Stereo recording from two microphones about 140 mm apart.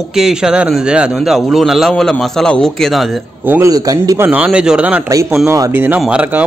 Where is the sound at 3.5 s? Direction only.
25° right (ahead or behind).